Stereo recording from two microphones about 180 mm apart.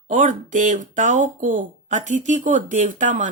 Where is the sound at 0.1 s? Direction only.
45° right (ahead or behind).